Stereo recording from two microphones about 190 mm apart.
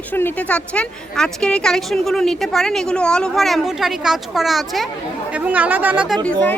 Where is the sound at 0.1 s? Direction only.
10° left (ahead or behind); by 6.1 s 5° right (ahead or behind).